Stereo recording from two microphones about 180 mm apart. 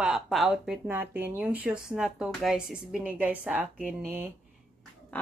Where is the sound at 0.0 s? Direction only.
Centre (ahead or behind).